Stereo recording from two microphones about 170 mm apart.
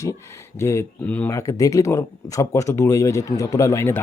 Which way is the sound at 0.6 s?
15° left (ahead or behind).